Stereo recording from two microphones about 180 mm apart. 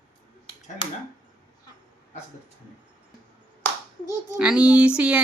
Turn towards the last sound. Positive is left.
turn(degrees=-5)  # may be behind; listen again after turning